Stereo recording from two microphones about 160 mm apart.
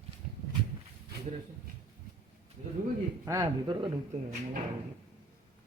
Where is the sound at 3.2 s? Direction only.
20° right (ahead or behind).